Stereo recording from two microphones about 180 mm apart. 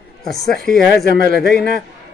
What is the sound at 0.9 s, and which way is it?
Speech, 65° left (ahead or behind).